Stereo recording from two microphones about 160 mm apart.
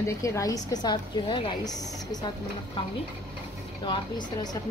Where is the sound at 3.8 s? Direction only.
25° left (ahead or behind).